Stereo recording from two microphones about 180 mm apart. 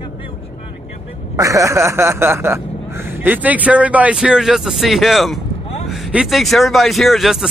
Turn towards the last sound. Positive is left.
turn(degrees=0)  # may be behind; listen again after turning